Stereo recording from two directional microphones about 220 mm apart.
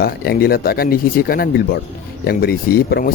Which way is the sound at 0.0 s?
45° left (ahead or behind).